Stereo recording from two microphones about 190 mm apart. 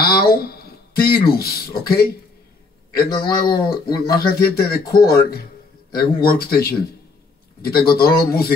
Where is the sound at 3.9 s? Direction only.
55° left (ahead or behind).